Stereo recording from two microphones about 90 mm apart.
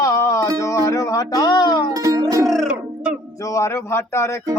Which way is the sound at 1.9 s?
45° right (ahead or behind).